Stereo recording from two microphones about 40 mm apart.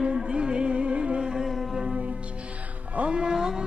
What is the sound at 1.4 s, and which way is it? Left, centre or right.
Music, centre.